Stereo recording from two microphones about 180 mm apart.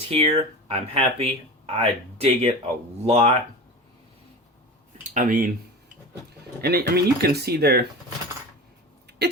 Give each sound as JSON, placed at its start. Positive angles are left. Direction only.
{"t": 0.1, "sound": "speech", "side_deg": -35}
{"t": 5.1, "sound": "speech", "side_deg": -45}
{"t": 6.6, "sound": "speech", "side_deg": -60}
{"t": 9.0, "sound": "a sound", "side_deg": -65}